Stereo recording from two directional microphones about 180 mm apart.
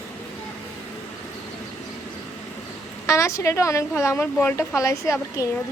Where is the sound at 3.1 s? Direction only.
15° left (ahead or behind).